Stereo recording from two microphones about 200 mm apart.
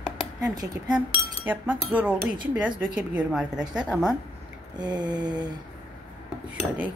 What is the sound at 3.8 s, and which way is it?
Speech, 10° left (ahead or behind).